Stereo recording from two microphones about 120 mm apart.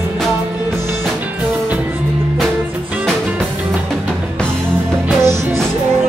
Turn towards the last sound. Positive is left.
turn(degrees=-20)  # may be behind; listen again after turning